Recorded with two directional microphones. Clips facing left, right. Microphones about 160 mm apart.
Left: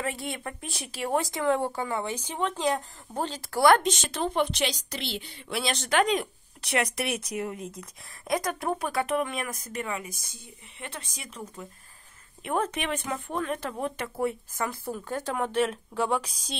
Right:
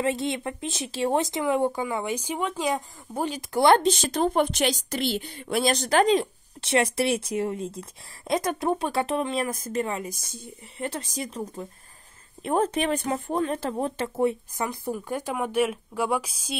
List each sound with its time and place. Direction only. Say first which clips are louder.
0.0 s speech: right 7 dB; 20° right (ahead or behind)